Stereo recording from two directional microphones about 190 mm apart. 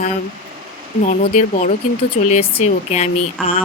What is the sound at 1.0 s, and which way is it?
Speech, 40° left (ahead or behind).